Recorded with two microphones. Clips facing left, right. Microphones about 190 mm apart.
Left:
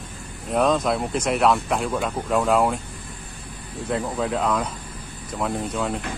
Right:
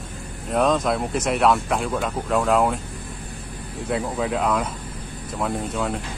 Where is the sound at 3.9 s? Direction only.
Centre (ahead or behind).